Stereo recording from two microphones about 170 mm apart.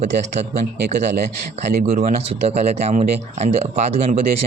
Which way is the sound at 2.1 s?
40° right (ahead or behind).